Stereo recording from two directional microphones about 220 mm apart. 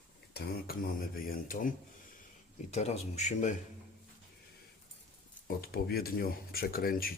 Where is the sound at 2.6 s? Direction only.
30° left (ahead or behind).